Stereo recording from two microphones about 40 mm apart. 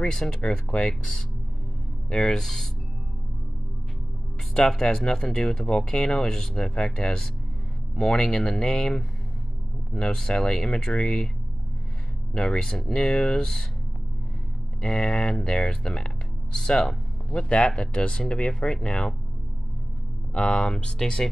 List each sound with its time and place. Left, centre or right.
0.0 s speech: centre
4.6 s speech: centre
12.4 s speech: centre
14.9 s speech: left
15.1 s speech: centre
17.3 s speech: left
20.3 s speech: left